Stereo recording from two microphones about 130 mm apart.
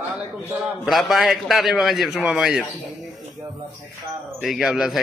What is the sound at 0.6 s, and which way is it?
A man's voice, centre (ahead or behind).